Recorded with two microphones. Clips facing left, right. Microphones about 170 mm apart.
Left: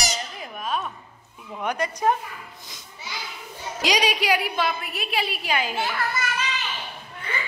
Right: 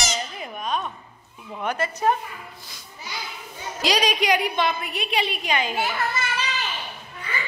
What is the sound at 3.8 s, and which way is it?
A woman's voice, 10° left (ahead or behind).